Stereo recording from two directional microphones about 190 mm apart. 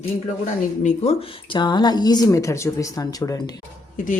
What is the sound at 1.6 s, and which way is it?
Speech, 20° left (ahead or behind).